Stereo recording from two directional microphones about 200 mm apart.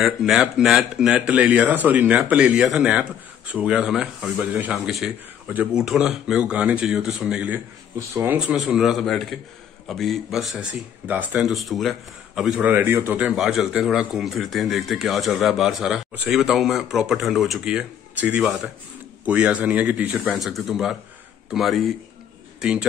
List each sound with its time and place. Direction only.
0.0 s a man's voice: centre (ahead or behind)